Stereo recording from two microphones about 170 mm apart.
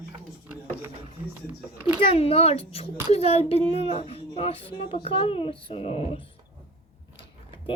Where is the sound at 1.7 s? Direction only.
15° right (ahead or behind).